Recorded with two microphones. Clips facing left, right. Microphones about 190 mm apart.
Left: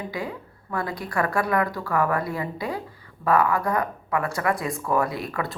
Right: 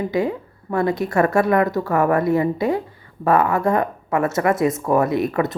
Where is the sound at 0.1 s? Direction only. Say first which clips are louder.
Right 10 dB; 25° right (ahead or behind).